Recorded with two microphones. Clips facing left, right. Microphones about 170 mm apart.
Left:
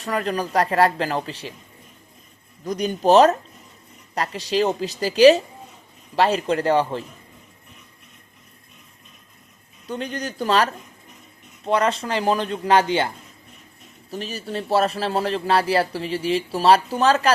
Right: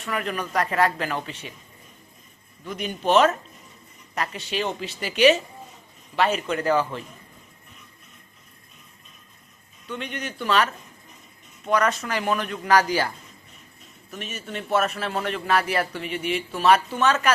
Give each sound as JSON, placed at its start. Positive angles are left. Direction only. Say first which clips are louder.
{"t": 0.0, "sound": "a man's voice", "louder": "left 4 dB", "side_deg": 35}
{"t": 2.6, "sound": "a man's voice", "louder": "left 6 dB", "side_deg": 40}
{"t": 9.8, "sound": "a man's voice", "louder": "left 4 dB", "side_deg": 40}